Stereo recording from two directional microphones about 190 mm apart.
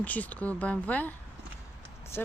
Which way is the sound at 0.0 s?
10° left (ahead or behind).